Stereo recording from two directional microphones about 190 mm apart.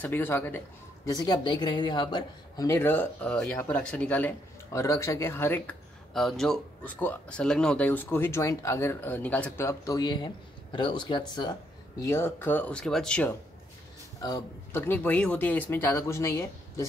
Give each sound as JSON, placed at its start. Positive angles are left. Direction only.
{"t": 0.0, "sound": "a woman's voice", "side_deg": 10}
{"t": 6.1, "sound": "speech", "side_deg": 0}
{"t": 14.2, "sound": "speech", "side_deg": 15}